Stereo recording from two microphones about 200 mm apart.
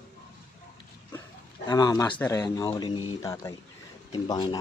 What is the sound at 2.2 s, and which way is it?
Speech, 15° left (ahead or behind).